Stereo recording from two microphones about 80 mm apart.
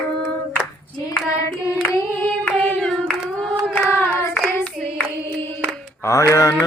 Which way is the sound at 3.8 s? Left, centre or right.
Left.